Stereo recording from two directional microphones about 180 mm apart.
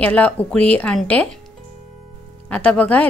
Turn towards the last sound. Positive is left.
turn(degrees=5)  # may be behind; listen again after turning